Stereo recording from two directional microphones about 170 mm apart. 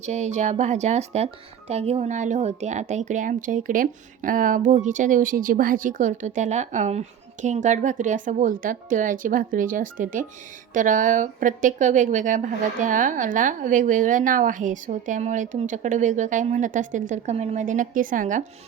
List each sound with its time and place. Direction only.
0.0 s speech: 40° right (ahead or behind)